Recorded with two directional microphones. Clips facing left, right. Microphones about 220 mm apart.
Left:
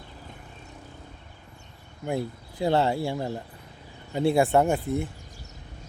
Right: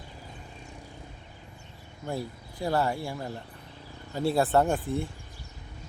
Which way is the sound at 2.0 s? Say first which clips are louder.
Left 5 dB; 20° left (ahead or behind).